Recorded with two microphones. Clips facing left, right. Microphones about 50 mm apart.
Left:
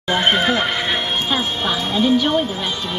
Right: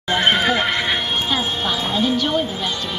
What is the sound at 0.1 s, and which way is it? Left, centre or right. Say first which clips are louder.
Horse: even; centre.